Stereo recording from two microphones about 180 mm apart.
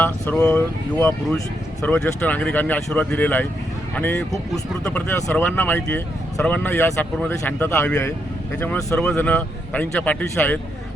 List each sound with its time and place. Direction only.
0.0 s a man's voice: 10° left (ahead or behind)